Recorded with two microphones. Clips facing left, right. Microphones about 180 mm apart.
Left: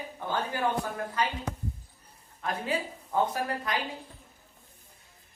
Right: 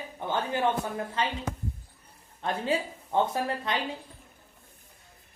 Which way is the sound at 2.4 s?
30° right (ahead or behind).